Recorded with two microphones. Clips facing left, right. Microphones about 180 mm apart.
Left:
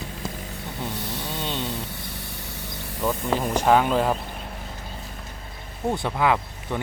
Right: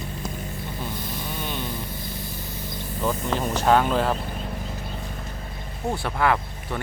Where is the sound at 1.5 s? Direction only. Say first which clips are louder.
Left 1 dB; 75° left (ahead or behind).